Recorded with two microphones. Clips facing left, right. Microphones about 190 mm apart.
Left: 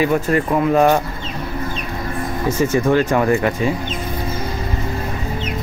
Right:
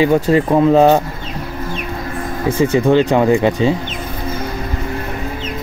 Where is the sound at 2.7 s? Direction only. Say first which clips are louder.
Right 4 dB; 20° right (ahead or behind).